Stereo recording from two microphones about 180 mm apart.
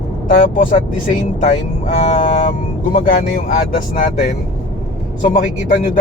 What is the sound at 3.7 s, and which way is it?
Speech, 50° left (ahead or behind).